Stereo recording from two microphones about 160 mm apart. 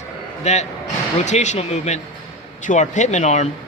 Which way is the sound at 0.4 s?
45° left (ahead or behind).